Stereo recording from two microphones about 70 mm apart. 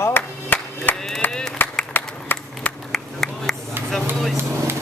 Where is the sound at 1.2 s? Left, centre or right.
Left.